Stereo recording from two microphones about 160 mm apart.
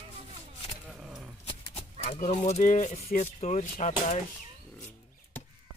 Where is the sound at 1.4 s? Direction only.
35° left (ahead or behind).